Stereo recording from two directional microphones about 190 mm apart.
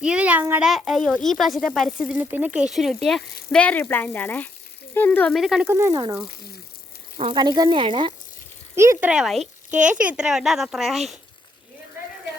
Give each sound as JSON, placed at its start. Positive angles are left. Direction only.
{"t": 0.0, "sound": "a child's voice", "side_deg": -5}
{"t": 5.7, "sound": "speech", "side_deg": -15}
{"t": 7.2, "sound": "speech", "side_deg": -25}
{"t": 8.7, "sound": "a child's voice", "side_deg": -15}